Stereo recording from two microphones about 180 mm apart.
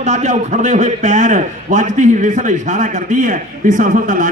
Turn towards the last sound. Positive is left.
turn(degrees=-45)  # may be behind; listen again after turning